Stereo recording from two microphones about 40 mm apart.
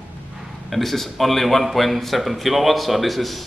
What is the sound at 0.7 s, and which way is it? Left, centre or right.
A man's voice, centre.